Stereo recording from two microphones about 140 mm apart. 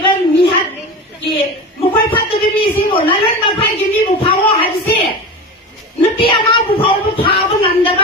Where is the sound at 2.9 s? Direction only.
40° left (ahead or behind).